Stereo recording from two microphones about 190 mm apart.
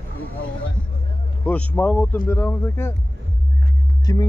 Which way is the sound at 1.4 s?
10° left (ahead or behind).